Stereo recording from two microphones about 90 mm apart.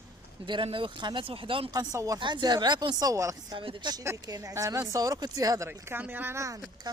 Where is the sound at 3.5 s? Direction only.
70° right (ahead or behind).